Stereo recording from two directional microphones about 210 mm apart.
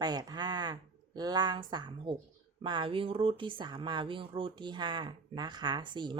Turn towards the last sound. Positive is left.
turn(degrees=-20)  # may be behind; listen again after turning